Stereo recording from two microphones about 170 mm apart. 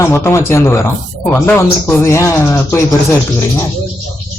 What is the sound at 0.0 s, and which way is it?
Speech, 15° left (ahead or behind).